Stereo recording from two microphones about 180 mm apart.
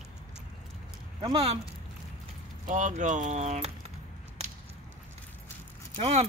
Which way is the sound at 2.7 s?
45° right (ahead or behind).